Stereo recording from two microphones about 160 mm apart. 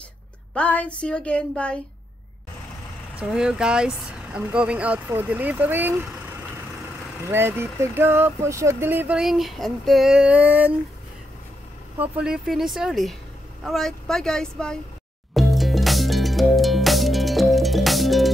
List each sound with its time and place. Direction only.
0.6 s speech: 10° left (ahead or behind)
3.2 s speech: 5° right (ahead or behind)
7.2 s speech: 15° right (ahead or behind)
12.0 s speech: 5° right (ahead or behind)
15.3 s music: centre (ahead or behind)